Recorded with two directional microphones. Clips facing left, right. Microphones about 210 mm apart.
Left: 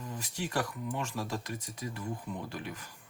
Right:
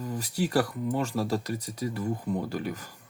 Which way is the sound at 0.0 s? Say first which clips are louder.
Right 8 dB; 40° right (ahead or behind).